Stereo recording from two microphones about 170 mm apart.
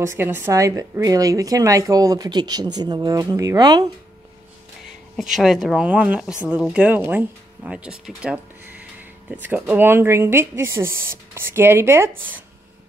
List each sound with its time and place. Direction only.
0.0 s a woman's voice: 15° right (ahead or behind)
5.1 s speech: centre (ahead or behind)